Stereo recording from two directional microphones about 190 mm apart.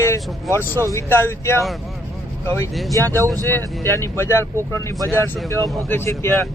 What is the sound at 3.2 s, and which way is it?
Speech, 15° right (ahead or behind).